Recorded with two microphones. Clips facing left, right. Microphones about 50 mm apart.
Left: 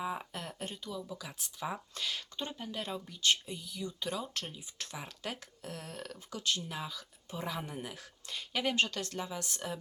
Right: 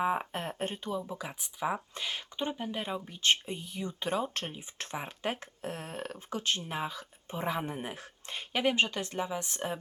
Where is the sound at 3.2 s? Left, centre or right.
Right.